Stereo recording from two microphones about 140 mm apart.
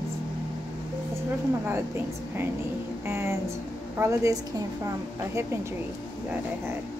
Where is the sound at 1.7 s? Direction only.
15° right (ahead or behind).